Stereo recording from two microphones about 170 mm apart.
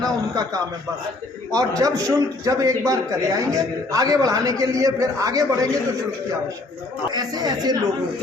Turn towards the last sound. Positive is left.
turn(degrees=-25)  # may be behind; listen again after turning